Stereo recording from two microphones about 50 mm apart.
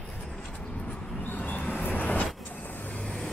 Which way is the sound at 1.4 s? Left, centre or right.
Left.